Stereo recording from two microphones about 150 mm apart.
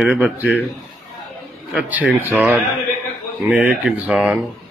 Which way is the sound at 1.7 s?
10° right (ahead or behind).